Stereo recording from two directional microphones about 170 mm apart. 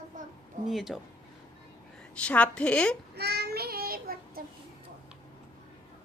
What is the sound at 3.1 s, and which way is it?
Child singing, 70° right (ahead or behind).